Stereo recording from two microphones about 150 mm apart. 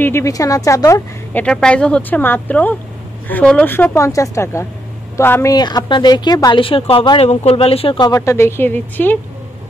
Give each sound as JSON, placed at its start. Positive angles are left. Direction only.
{"t": 0.0, "sound": "a woman's voice", "side_deg": 20}
{"t": 1.3, "sound": "a woman's voice", "side_deg": 5}
{"t": 6.6, "sound": "speech", "side_deg": 35}
{"t": 8.0, "sound": "speech", "side_deg": 20}